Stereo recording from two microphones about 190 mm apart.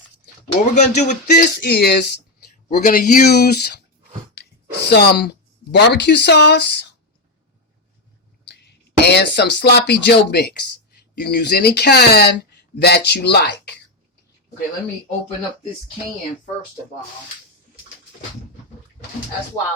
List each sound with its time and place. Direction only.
0.6 s a sound: 40° left (ahead or behind)
1.6 s speech: 60° left (ahead or behind)
2.6 s speech: 45° left (ahead or behind)
4.9 s speech: 60° left (ahead or behind)
8.4 s a sound: 60° left (ahead or behind)
9.7 s speech: 60° left (ahead or behind)